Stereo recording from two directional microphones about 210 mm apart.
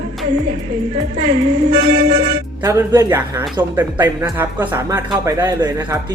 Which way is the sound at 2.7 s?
15° right (ahead or behind).